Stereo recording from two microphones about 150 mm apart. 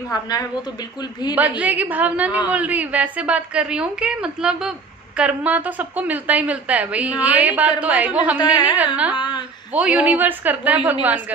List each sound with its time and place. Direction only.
0.1 s a woman's voice: 25° left (ahead or behind)
1.3 s a woman's voice: 10° right (ahead or behind)
9.1 s a sound: 30° left (ahead or behind)
9.7 s a woman's voice: 10° right (ahead or behind)